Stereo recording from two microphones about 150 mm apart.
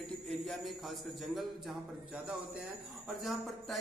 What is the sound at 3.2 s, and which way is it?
Speech, centre (ahead or behind).